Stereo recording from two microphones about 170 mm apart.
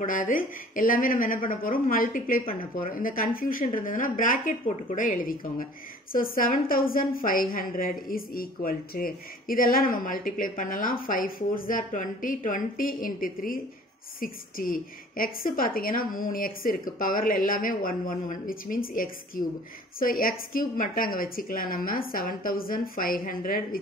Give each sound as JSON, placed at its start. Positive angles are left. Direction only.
{"t": 0.0, "sound": "a woman's voice", "side_deg": 55}